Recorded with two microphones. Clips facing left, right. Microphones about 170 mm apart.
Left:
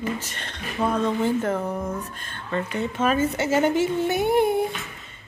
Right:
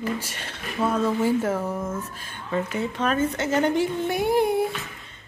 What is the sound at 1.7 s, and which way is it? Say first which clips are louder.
Speech: left 1 dB; 15° left (ahead or behind).